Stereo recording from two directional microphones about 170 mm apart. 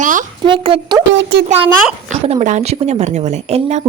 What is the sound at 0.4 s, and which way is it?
Speech, 30° right (ahead or behind).